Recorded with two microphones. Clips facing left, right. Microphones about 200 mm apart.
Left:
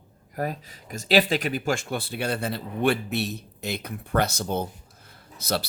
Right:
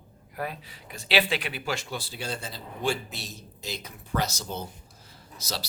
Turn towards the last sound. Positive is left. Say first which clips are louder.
# left 8 dB
turn(degrees=55)  # may be behind; listen again after turning